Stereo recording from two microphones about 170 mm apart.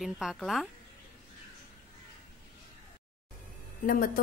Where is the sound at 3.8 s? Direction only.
55° left (ahead or behind).